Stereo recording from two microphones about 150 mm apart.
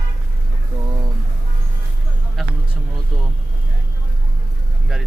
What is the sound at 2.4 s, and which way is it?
Speech, centre (ahead or behind).